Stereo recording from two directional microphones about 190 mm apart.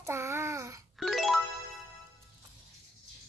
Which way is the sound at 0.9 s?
Centre (ahead or behind).